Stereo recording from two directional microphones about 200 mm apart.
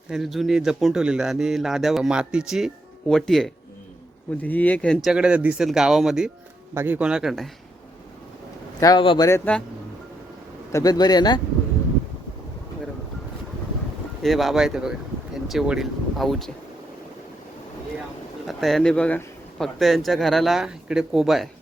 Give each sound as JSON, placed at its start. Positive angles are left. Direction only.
{"t": 0.1, "sound": "speech", "side_deg": 0}
{"t": 8.8, "sound": "speech", "side_deg": 20}
{"t": 10.7, "sound": "a man's voice", "side_deg": 15}
{"t": 14.2, "sound": "speech", "side_deg": 0}
{"t": 18.4, "sound": "speech", "side_deg": 0}